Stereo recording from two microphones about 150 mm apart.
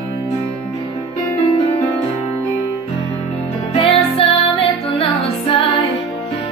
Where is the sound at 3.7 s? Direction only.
35° left (ahead or behind).